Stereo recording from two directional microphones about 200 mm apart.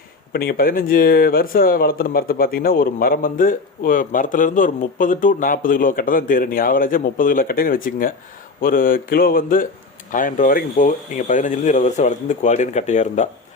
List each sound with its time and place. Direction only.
0.3 s speech: 45° left (ahead or behind)